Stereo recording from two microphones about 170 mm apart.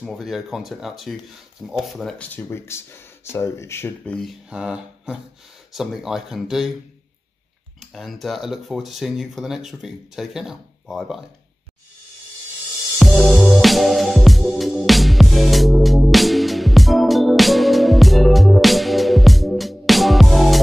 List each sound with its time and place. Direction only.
0.0 s speech: centre (ahead or behind)
7.8 s speech: centre (ahead or behind)
13.0 s music: centre (ahead or behind)